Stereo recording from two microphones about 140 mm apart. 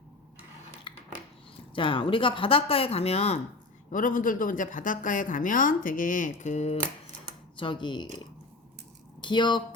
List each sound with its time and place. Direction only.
0.9 s a sound: 35° left (ahead or behind)
1.5 s speech: 35° left (ahead or behind)
3.9 s a woman's voice: 75° left (ahead or behind); by 6.7 s 55° left (ahead or behind)
7.5 s speech: 35° left (ahead or behind)
9.2 s speech: 35° left (ahead or behind)